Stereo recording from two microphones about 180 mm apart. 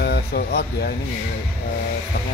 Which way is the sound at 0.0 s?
65° left (ahead or behind).